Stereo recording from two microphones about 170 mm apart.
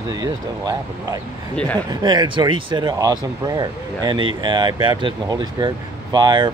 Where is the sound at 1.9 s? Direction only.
25° right (ahead or behind).